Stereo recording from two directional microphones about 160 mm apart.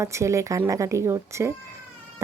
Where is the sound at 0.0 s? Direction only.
20° right (ahead or behind).